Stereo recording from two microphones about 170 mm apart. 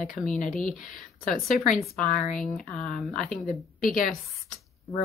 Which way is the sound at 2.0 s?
45° left (ahead or behind).